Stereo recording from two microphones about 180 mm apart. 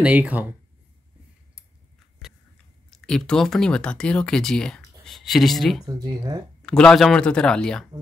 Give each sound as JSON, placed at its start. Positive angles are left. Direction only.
{"t": 0.0, "sound": "speech", "side_deg": -10}
{"t": 2.9, "sound": "speech", "side_deg": 5}
{"t": 5.9, "sound": "speech", "side_deg": -20}
{"t": 6.6, "sound": "speech", "side_deg": 5}